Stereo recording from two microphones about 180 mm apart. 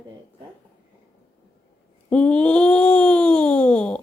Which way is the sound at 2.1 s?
5° left (ahead or behind).